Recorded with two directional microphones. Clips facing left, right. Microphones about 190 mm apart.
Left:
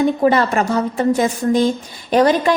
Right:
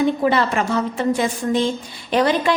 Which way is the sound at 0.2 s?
40° left (ahead or behind).